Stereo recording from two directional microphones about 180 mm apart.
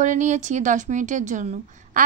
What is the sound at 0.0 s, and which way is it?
A woman's voice, 40° right (ahead or behind).